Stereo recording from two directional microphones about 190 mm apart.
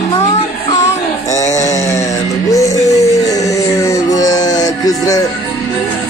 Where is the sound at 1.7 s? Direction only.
20° left (ahead or behind).